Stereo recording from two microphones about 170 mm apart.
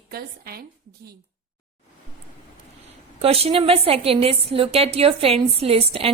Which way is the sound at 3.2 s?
35° right (ahead or behind).